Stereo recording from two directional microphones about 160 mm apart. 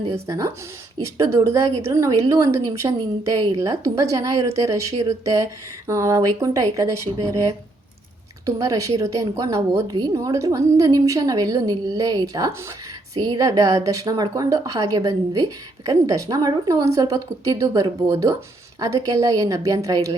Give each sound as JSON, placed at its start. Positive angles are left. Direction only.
{"t": 0.1, "sound": "a woman's voice", "side_deg": -20}
{"t": 8.4, "sound": "a woman's voice", "side_deg": -20}